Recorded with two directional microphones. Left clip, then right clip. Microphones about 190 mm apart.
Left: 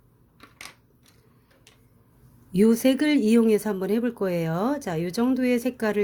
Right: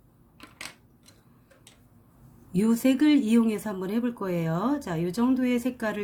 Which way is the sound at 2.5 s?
40° left (ahead or behind).